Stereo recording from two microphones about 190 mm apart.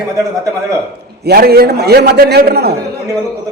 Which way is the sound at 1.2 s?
55° right (ahead or behind).